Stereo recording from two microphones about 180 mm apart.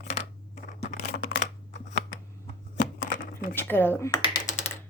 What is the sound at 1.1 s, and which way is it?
Computer keyboard, 65° left (ahead or behind).